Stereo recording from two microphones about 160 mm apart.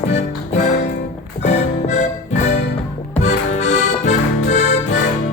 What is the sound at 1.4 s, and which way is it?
Music, 45° left (ahead or behind).